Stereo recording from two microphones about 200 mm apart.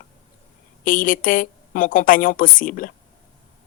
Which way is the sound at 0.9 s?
40° left (ahead or behind).